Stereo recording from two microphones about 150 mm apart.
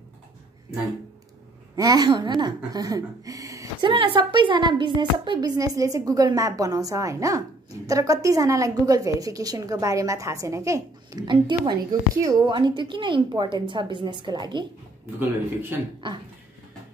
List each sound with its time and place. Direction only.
1.8 s speech: 25° right (ahead or behind)
3.8 s a woman's voice: 35° right (ahead or behind)